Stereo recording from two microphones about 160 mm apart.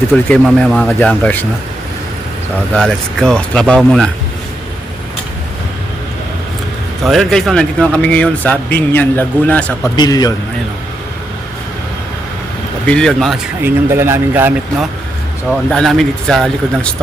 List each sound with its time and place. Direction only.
0.3 s a man's voice: 5° left (ahead or behind)
2.7 s speech: 5° left (ahead or behind)
7.0 s a man's voice: centre (ahead or behind)
9.9 s a man's voice: 25° left (ahead or behind)
12.8 s speech: 5° left (ahead or behind)
13.7 s speech: 15° right (ahead or behind)
15.4 s speech: 5° left (ahead or behind)